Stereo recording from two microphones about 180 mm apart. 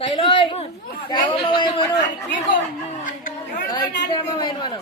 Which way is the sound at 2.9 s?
45° left (ahead or behind).